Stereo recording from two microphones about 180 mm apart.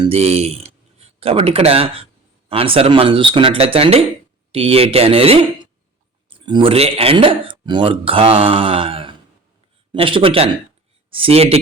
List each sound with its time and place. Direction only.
0.0 s a man's voice: 35° right (ahead or behind)